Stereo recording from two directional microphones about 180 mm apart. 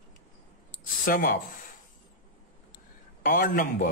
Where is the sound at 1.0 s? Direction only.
50° left (ahead or behind).